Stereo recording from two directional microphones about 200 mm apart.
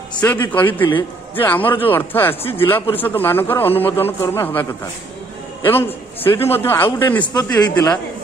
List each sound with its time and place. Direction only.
0.5 s a man's voice: 10° left (ahead or behind)